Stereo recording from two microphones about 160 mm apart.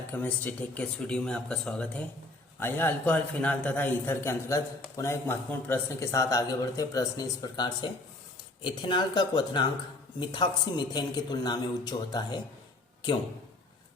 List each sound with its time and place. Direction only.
0.1 s a man's voice: 10° left (ahead or behind); by 12.4 s 25° left (ahead or behind)